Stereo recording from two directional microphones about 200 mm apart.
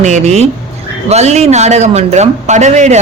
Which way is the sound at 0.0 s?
35° right (ahead or behind).